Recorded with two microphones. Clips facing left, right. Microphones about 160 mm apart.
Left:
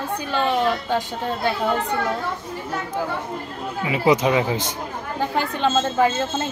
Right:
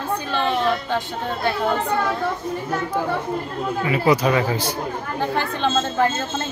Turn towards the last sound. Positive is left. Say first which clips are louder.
# left 1 dB
turn(degrees=15)  # may be behind; listen again after turning